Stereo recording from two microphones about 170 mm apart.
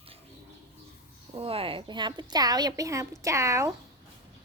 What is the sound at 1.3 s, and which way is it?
A woman's voice, 35° right (ahead or behind).